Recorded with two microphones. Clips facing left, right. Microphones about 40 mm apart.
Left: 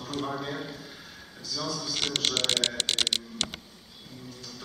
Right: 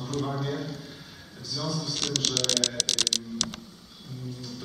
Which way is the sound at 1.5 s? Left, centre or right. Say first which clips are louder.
Right 1 dB; centre.